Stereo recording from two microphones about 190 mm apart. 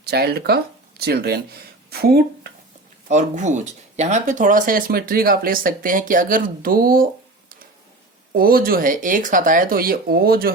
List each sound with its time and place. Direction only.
0.0 s speech: 55° right (ahead or behind)
3.1 s speech: 40° right (ahead or behind)
8.3 s speech: 50° right (ahead or behind)